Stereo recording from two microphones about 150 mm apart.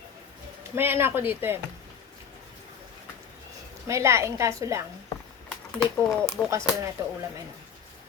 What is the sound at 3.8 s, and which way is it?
Speech, 20° right (ahead or behind).